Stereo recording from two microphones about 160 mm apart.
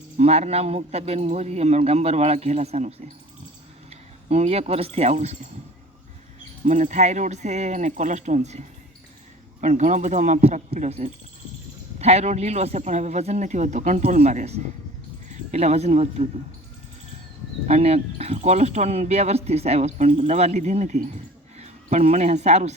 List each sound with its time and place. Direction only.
0.2 s a man's voice: 40° right (ahead or behind)
6.7 s a man's voice: 50° right (ahead or behind)
17.7 s a man's voice: 40° right (ahead or behind)